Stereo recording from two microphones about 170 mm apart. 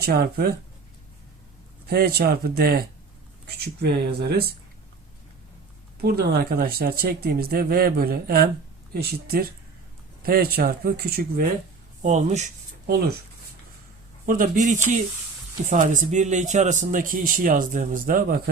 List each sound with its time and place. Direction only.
0.0 s speech: 65° right (ahead or behind)
1.9 s speech: 65° right (ahead or behind)
6.0 s speech: 70° right (ahead or behind)
12.0 s a man's voice: 45° right (ahead or behind)
14.3 s a man's voice: 50° right (ahead or behind)